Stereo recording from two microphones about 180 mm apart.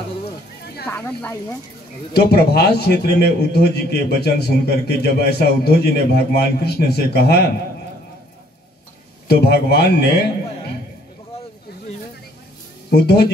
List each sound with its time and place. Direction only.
0.8 s speech: 10° left (ahead or behind)
2.1 s a man's voice: 60° left (ahead or behind)
9.3 s a man's voice: 60° left (ahead or behind)
12.9 s a man's voice: 65° left (ahead or behind)